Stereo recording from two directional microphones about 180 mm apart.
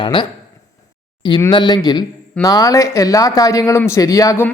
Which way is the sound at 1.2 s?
25° left (ahead or behind).